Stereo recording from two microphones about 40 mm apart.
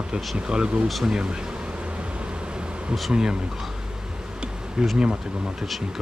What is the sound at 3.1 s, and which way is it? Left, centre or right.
Speech, centre.